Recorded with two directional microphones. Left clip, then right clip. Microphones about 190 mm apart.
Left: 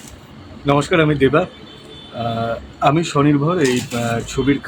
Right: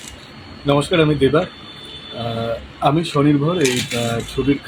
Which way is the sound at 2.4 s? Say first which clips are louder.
Left 1 dB; 25° left (ahead or behind).